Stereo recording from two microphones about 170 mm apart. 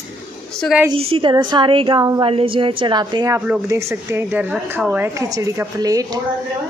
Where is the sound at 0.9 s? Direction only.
30° right (ahead or behind).